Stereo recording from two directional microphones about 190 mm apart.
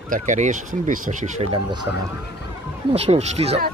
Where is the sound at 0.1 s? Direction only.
40° right (ahead or behind).